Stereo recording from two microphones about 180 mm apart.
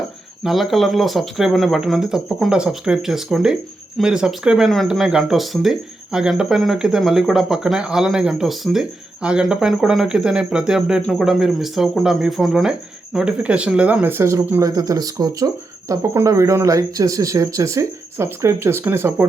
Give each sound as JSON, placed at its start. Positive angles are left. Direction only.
{"t": 0.4, "sound": "speech", "side_deg": 0}